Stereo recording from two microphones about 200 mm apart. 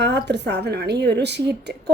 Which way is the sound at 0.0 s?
55° right (ahead or behind).